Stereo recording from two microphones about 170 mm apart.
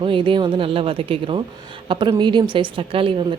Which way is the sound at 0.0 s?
30° right (ahead or behind).